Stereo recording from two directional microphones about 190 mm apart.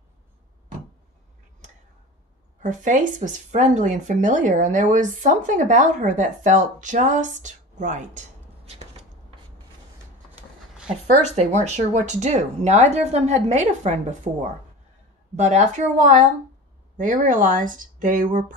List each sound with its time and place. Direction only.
2.6 s speech: 40° right (ahead or behind)
11.1 s speech: 40° right (ahead or behind)